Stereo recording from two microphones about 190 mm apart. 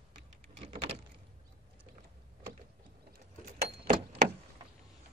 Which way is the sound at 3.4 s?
50° right (ahead or behind).